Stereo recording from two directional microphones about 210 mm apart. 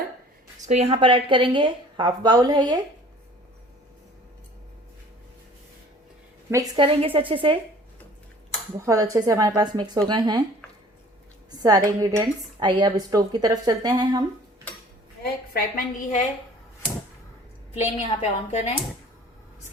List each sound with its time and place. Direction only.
0.7 s a woman's voice: 30° right (ahead or behind)
6.5 s a woman's voice: 20° right (ahead or behind)
8.8 s a woman's voice: 15° right (ahead or behind)
11.5 s a woman's voice: 15° right (ahead or behind)
15.2 s a woman's voice: 45° left (ahead or behind)
17.7 s a woman's voice: 30° left (ahead or behind)